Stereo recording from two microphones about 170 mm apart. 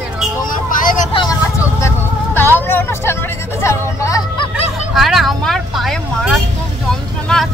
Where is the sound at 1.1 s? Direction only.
30° left (ahead or behind).